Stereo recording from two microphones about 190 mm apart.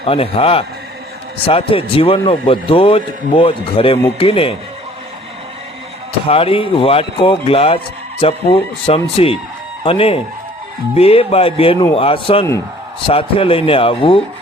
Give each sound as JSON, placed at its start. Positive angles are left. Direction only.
{"t": 0.0, "sound": "a man's voice", "side_deg": 30}
{"t": 6.2, "sound": "a man's voice", "side_deg": 30}